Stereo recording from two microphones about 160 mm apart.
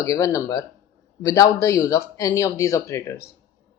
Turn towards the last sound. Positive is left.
turn(degrees=20)  # may be behind; listen again after turning